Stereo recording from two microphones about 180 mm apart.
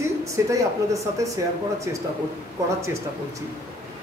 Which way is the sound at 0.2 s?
15° right (ahead or behind).